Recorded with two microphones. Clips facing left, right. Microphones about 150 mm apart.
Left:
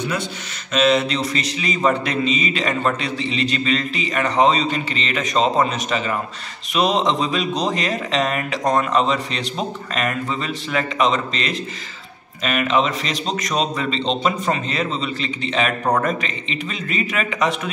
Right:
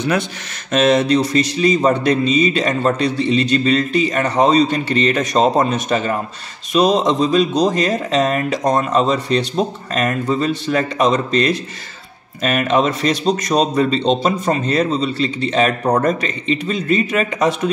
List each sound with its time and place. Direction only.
0.7 s speech: 45° right (ahead or behind)